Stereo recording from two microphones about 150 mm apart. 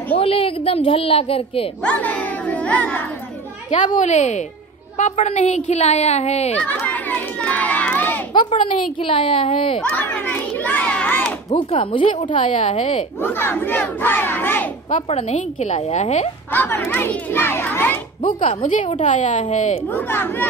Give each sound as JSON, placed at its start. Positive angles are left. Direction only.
{"t": 0.1, "sound": "a child's voice", "side_deg": 40}
{"t": 1.9, "sound": "battle cry", "side_deg": 10}
{"t": 3.7, "sound": "a woman's voice", "side_deg": 55}
{"t": 6.5, "sound": "crowd", "side_deg": 10}
{"t": 8.3, "sound": "a woman's voice", "side_deg": 30}
{"t": 9.8, "sound": "a child's voice", "side_deg": 10}
{"t": 11.5, "sound": "a child's voice", "side_deg": 35}
{"t": 13.2, "sound": "battle cry", "side_deg": 15}
{"t": 15.0, "sound": "a woman's voice", "side_deg": 45}
{"t": 16.5, "sound": "battle cry", "side_deg": 15}
{"t": 18.6, "sound": "a woman's voice", "side_deg": 55}
{"t": 19.9, "sound": "battle cry", "side_deg": 15}